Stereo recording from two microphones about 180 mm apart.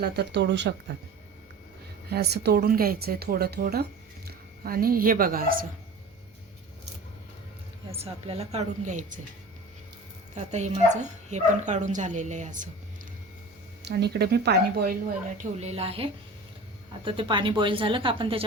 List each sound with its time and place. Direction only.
0.0 s speech: 70° right (ahead or behind)
2.0 s speech: 65° right (ahead or behind)
7.9 s speech: 35° right (ahead or behind)
10.3 s speech: 40° right (ahead or behind)
13.8 s speech: 65° right (ahead or behind)
15.4 s speech: 35° right (ahead or behind)